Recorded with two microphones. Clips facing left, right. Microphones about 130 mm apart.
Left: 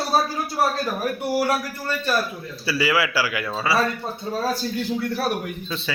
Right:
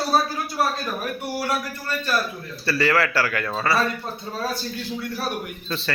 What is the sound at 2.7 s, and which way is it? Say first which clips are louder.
Speech: right 1 dB; 5° left (ahead or behind).